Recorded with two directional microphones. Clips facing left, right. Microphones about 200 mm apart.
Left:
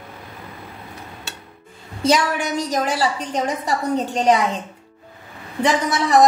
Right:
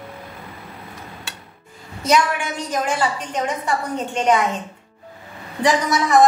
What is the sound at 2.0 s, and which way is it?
A woman's voice, 35° left (ahead or behind).